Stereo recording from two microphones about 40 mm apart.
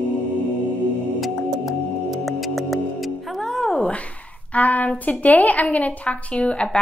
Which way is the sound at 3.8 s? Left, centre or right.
Left.